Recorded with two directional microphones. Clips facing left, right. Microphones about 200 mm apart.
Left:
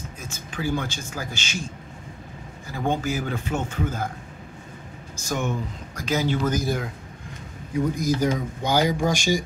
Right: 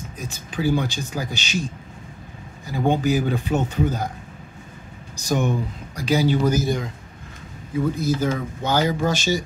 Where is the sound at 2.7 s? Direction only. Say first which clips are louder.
Right 5 dB; 15° right (ahead or behind).